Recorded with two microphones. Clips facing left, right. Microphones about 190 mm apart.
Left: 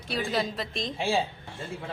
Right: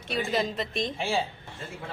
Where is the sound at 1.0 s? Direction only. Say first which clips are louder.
Left 3 dB; 15° left (ahead or behind).